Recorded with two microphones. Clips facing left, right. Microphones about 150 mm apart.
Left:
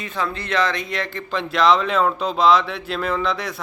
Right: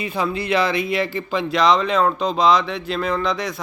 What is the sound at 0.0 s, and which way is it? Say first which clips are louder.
Speech: right 3 dB; 10° right (ahead or behind).